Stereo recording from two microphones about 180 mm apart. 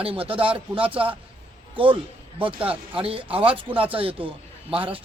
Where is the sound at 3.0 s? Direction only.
30° right (ahead or behind).